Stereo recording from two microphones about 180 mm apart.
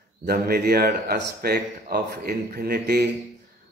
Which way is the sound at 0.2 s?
60° right (ahead or behind).